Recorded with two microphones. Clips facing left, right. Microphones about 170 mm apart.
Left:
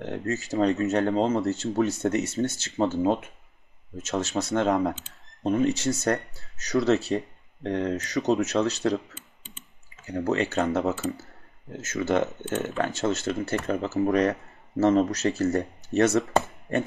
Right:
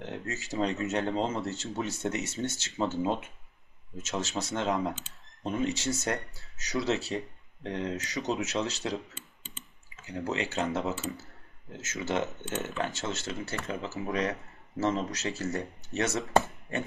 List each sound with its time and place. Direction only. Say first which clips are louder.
0.0 s speech: left 8 dB; 45° left (ahead or behind)
6.7 s speech: left 7 dB; 50° left (ahead or behind)
8.6 s speech: left 8 dB; 55° left (ahead or behind)
10.0 s speech: left 7 dB; 45° left (ahead or behind)